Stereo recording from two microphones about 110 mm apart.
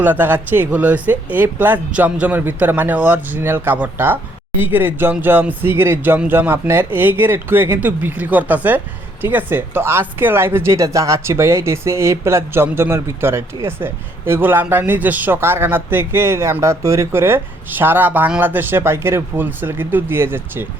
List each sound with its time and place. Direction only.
0.0 s speech: 15° right (ahead or behind)